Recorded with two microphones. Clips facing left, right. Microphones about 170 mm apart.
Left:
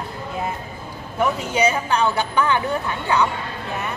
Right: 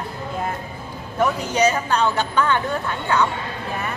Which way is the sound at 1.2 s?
10° left (ahead or behind).